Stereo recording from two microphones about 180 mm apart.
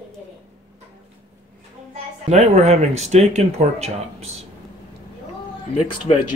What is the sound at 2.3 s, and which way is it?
Speech, 40° right (ahead or behind).